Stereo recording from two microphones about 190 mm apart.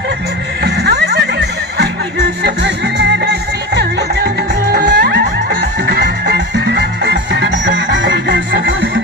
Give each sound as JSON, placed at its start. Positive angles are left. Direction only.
{"t": 0.7, "sound": "music", "side_deg": -60}
{"t": 2.4, "sound": "music", "side_deg": -65}